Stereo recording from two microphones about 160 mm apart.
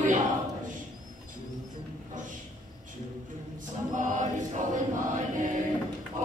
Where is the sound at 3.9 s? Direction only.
55° right (ahead or behind).